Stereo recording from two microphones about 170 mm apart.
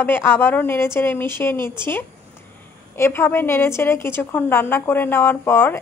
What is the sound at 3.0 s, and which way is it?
A woman's voice, 15° left (ahead or behind).